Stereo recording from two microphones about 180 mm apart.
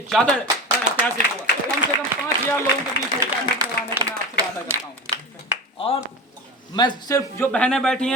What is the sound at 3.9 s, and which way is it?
Clapping, 20° right (ahead or behind).